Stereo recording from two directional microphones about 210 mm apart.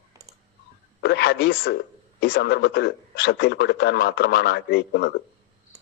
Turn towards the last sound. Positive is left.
turn(degrees=50)  # may be behind; listen again after turning